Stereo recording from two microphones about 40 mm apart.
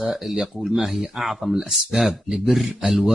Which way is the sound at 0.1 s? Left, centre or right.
Centre.